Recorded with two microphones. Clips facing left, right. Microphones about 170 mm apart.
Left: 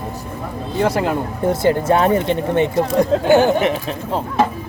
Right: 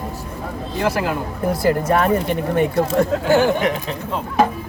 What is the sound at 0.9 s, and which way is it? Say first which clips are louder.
Speech: left 3 dB; 25° left (ahead or behind).